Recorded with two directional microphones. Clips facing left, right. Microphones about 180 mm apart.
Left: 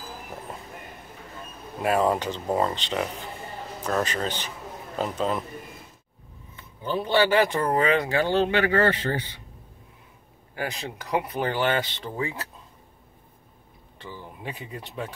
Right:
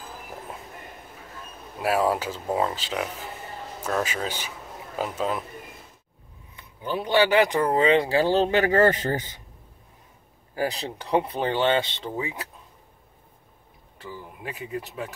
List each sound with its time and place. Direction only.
1.8 s speech: 5° right (ahead or behind)
6.5 s speech: 15° right (ahead or behind); by 9.4 s 45° right (ahead or behind)
10.5 s speech: 35° right (ahead or behind); by 12.4 s 20° right (ahead or behind)
13.9 s speech: 5° right (ahead or behind)